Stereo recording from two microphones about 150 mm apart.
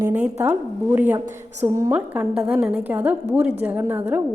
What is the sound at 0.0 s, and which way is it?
A woman's voice, 10° right (ahead or behind).